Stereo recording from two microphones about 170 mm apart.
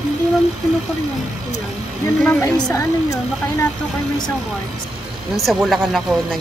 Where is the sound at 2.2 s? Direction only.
10° left (ahead or behind).